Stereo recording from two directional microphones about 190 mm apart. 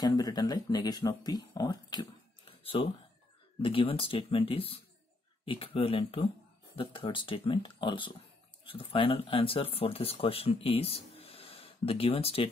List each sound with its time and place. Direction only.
0.0 s speech: 20° left (ahead or behind)